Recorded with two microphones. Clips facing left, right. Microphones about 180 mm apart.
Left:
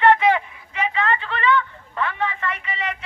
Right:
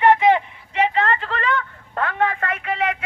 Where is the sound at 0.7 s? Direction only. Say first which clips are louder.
Right 3 dB; 35° right (ahead or behind).